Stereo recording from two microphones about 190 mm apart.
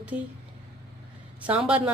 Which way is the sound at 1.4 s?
5° right (ahead or behind).